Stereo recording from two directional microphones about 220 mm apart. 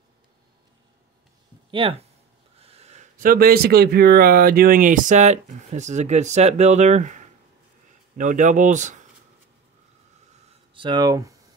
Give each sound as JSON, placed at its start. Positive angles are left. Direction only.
{"t": 1.7, "sound": "speech", "side_deg": -25}
{"t": 10.7, "sound": "speech", "side_deg": -20}